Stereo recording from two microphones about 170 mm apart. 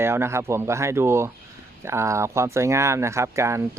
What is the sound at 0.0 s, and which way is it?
Speech, 15° right (ahead or behind).